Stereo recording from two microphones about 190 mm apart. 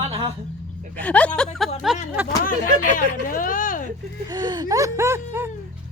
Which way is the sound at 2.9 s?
45° left (ahead or behind).